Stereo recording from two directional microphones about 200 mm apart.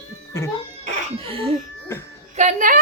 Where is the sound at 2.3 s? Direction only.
40° right (ahead or behind).